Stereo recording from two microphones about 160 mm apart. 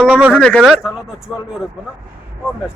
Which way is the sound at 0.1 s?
10° right (ahead or behind).